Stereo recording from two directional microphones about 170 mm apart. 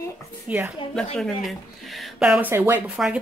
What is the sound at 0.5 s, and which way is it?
Speech, 10° right (ahead or behind).